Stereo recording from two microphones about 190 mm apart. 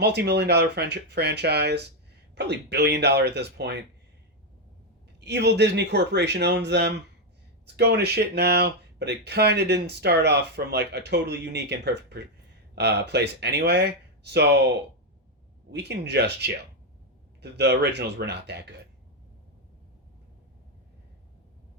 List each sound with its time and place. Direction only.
0.0 s speech: 60° right (ahead or behind)
5.2 s speech: 65° right (ahead or behind)
15.7 s speech: 60° right (ahead or behind)